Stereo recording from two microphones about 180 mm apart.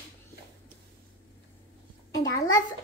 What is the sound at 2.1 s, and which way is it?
Speech, 20° left (ahead or behind).